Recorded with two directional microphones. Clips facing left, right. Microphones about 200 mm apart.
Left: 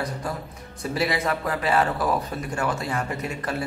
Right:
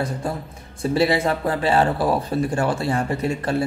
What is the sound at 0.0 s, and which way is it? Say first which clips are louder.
A man's voice: right 4 dB; 25° right (ahead or behind).